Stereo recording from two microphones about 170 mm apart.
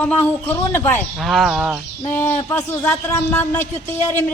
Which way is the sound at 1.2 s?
Centre (ahead or behind).